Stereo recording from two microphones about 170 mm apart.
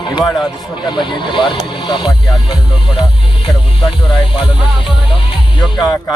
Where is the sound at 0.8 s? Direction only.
25° left (ahead or behind).